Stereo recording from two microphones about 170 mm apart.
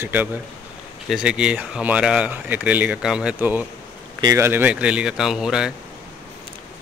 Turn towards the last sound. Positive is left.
turn(degrees=-5)  # may be behind; listen again after turning